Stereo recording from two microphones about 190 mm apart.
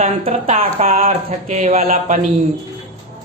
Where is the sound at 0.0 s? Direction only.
35° right (ahead or behind).